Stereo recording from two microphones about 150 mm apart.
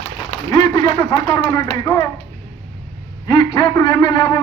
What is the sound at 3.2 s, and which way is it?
A man's voice, 30° left (ahead or behind).